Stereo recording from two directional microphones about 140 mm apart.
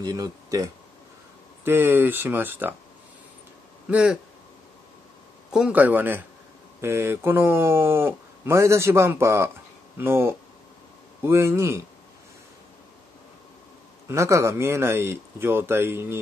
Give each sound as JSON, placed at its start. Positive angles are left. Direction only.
{"t": 0.0, "sound": "speech", "side_deg": -25}
{"t": 3.9, "sound": "speech", "side_deg": -5}
{"t": 5.5, "sound": "speech", "side_deg": -10}
{"t": 14.0, "sound": "speech", "side_deg": -20}